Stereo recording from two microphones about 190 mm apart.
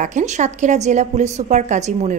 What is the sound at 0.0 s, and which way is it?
A woman's voice, 40° right (ahead or behind).